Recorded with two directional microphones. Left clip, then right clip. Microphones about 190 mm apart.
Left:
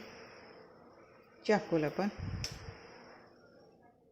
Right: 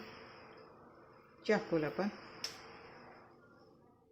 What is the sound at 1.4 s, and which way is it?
Speech, 10° left (ahead or behind).